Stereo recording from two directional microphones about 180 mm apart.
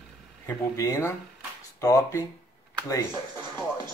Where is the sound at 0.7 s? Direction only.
15° left (ahead or behind).